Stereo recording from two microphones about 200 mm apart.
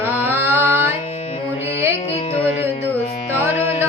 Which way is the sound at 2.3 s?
30° left (ahead or behind).